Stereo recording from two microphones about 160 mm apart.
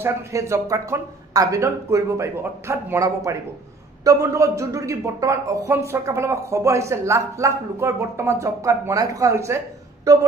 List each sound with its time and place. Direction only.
0.0 s speech: 20° right (ahead or behind)